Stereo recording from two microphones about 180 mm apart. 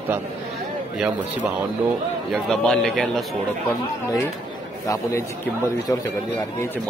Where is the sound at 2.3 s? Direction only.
Centre (ahead or behind).